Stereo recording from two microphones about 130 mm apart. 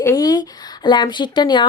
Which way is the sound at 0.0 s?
25° left (ahead or behind).